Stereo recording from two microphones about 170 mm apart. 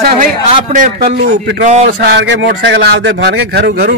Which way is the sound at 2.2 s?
85° right.